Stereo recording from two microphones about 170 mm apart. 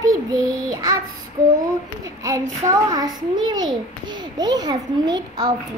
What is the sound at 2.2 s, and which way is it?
A child's voice, 20° right (ahead or behind).